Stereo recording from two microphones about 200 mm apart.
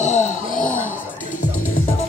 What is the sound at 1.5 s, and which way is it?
Music, 90° left.